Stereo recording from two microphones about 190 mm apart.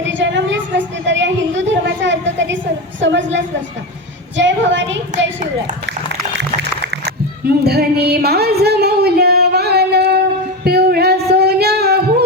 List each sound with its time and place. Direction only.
0.0 s a sound: 75° right (ahead or behind)
3.0 s a woman's voice: 75° right (ahead or behind)
6.3 s music: 65° right (ahead or behind)
10.6 s singing: 55° right (ahead or behind)